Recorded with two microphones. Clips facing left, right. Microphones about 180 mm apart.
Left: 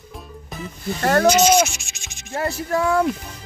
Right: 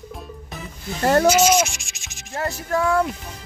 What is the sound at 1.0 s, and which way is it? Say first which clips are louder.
Speech: right 1 dB; 20° right (ahead or behind).